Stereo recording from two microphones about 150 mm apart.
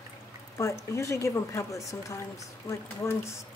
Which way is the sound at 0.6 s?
20° left (ahead or behind).